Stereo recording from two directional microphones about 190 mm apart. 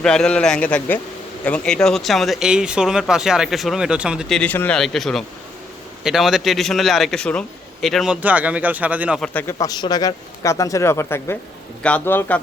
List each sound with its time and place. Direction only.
0.0 s speech: 5° left (ahead or behind)
9.3 s speech: 10° left (ahead or behind)